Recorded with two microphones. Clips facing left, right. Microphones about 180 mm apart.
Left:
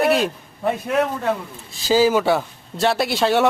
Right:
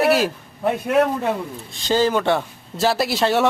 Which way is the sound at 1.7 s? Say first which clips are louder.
Left 2 dB; 5° left (ahead or behind).